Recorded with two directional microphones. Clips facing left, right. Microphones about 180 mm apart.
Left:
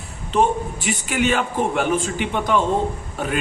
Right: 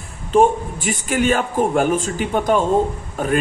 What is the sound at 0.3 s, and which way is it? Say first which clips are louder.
A man's voice: right 4 dB; 45° right (ahead or behind).